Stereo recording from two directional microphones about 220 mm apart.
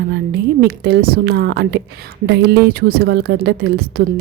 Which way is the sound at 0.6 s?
45° right (ahead or behind).